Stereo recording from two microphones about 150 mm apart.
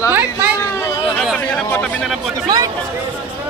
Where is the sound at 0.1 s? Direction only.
15° right (ahead or behind).